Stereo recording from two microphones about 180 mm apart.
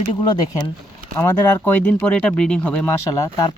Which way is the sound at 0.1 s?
25° left (ahead or behind).